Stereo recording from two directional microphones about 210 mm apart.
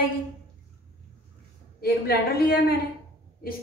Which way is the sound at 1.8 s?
45° left (ahead or behind).